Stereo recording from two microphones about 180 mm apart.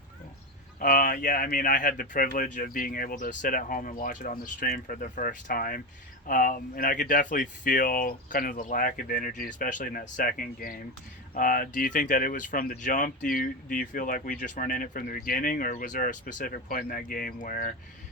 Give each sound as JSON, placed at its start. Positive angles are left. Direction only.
{"t": 0.8, "sound": "speech", "side_deg": 50}